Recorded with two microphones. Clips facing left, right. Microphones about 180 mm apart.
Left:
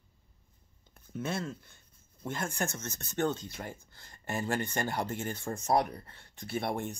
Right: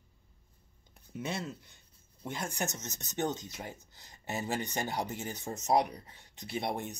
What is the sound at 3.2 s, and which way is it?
Speech, 15° right (ahead or behind).